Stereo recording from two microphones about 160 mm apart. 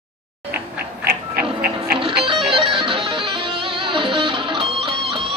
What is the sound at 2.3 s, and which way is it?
Music, 35° right (ahead or behind).